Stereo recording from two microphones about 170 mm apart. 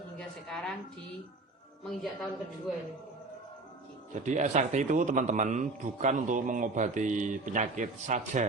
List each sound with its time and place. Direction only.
0.2 s a sound: centre (ahead or behind)
1.8 s speech: centre (ahead or behind)
4.1 s a man's voice: 45° right (ahead or behind)